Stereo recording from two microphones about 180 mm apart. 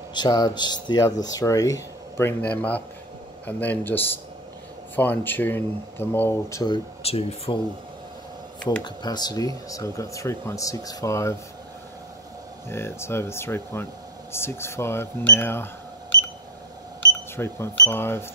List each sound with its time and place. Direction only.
0.1 s speech: 25° left (ahead or behind)
6.6 s speech: 30° left (ahead or behind)
8.8 s speech: 25° left (ahead or behind)
12.6 s speech: 15° left (ahead or behind)
17.4 s speech: 15° left (ahead or behind)